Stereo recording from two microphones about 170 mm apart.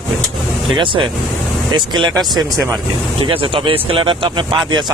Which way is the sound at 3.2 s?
30° right (ahead or behind).